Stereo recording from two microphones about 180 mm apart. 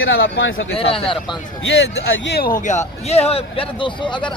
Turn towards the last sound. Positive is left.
turn(degrees=25)  # may be behind; listen again after turning